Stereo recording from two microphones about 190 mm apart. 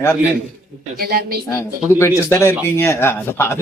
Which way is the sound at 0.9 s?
55° right (ahead or behind).